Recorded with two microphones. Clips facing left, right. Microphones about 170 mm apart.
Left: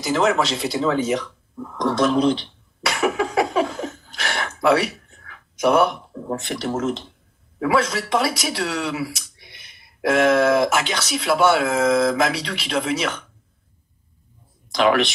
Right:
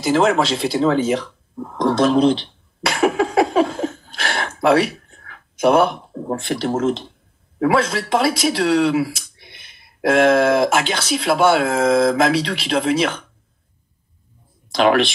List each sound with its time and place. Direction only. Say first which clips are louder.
0.0 s speech: right 3 dB; 30° right (ahead or behind)
3.3 s a sound: right 4 dB; 30° right (ahead or behind)
4.6 s speech: right 3 dB; 30° right (ahead or behind)
9.0 s a sound: right 3 dB; 30° right (ahead or behind)
11.0 s speech: even; 30° right (ahead or behind)
14.7 s speech: right 2 dB; 30° right (ahead or behind)